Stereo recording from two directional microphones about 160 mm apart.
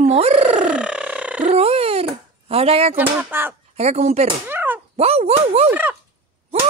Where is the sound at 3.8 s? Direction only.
40° right (ahead or behind).